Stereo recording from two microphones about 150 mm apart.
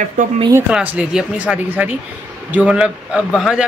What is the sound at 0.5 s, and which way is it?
A man's voice, 10° right (ahead or behind).